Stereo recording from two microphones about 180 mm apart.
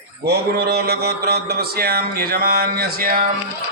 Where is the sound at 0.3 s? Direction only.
60° right (ahead or behind).